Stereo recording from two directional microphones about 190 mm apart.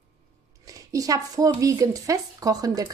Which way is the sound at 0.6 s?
15° right (ahead or behind).